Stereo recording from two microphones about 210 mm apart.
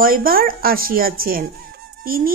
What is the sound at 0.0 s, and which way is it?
Speech, 45° right (ahead or behind).